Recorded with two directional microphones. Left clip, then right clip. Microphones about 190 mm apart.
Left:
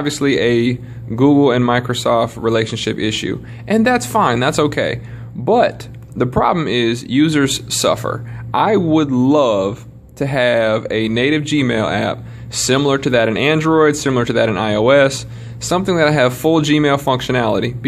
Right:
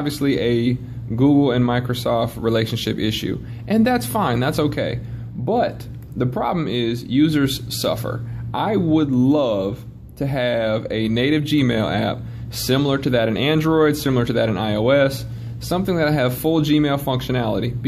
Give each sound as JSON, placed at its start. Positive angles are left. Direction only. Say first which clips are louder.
{"t": 0.0, "sound": "a man's voice", "louder": "left 5 dB", "side_deg": 20}